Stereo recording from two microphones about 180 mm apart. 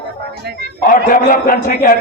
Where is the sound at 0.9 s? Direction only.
50° left (ahead or behind).